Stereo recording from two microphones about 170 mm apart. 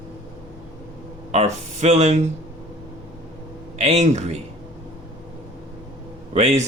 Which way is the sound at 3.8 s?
40° right (ahead or behind).